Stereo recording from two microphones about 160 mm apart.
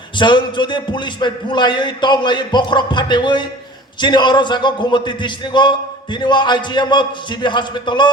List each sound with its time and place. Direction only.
0.2 s speech: 30° left (ahead or behind)